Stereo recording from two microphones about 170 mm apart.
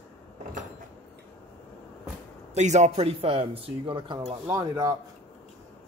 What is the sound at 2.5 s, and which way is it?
Speech, 45° right (ahead or behind).